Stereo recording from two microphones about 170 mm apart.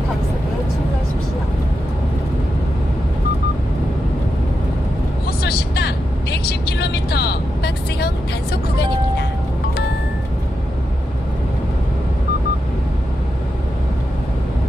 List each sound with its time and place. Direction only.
5.4 s vehicle: 70° left (ahead or behind)